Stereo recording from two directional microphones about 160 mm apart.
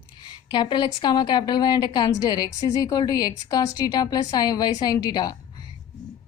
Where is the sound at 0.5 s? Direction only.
30° left (ahead or behind).